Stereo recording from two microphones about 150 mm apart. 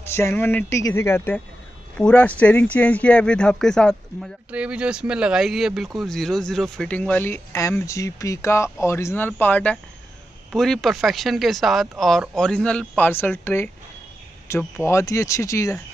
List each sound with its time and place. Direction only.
0.0 s speech: 15° left (ahead or behind)
4.5 s speech: 10° right (ahead or behind); by 13.7 s 15° left (ahead or behind)
14.8 s speech: 20° left (ahead or behind)